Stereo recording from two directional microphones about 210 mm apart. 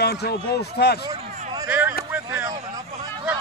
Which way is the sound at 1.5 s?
10° right (ahead or behind).